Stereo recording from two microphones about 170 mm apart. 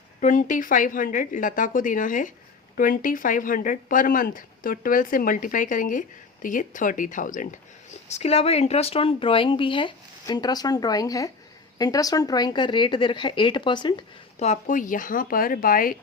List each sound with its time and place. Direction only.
0.2 s speech: 50° left (ahead or behind)
8.0 s speech: 40° left (ahead or behind)
14.3 s speech: 45° left (ahead or behind)